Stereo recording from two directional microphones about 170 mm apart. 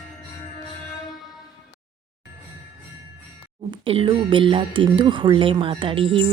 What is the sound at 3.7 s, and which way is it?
Speech, 30° right (ahead or behind).